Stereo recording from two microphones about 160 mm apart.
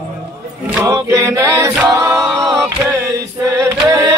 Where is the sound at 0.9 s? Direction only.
20° right (ahead or behind).